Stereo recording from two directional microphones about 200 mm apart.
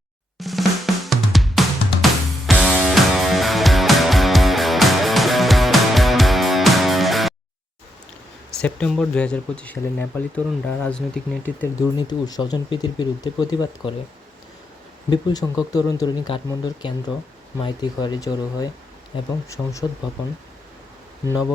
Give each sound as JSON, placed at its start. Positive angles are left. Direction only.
{"t": 0.3, "sound": "drum", "side_deg": 0}
{"t": 2.5, "sound": "music", "side_deg": 0}
{"t": 8.6, "sound": "speech", "side_deg": 5}
{"t": 11.9, "sound": "speech", "side_deg": 20}
{"t": 15.1, "sound": "speech", "side_deg": 20}